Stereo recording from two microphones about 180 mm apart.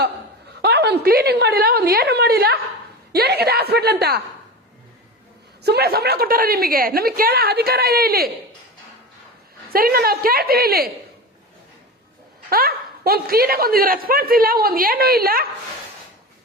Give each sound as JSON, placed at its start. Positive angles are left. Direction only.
{"t": 0.6, "sound": "a man's voice", "side_deg": -65}
{"t": 5.6, "sound": "a man's voice", "side_deg": -65}
{"t": 9.7, "sound": "a man's voice", "side_deg": -55}
{"t": 12.5, "sound": "a man's voice", "side_deg": -55}